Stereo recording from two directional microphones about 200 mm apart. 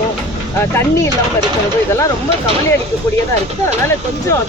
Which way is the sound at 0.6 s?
10° left (ahead or behind).